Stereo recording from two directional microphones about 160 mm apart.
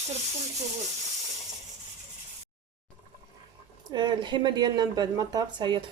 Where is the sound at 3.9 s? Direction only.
25° right (ahead or behind).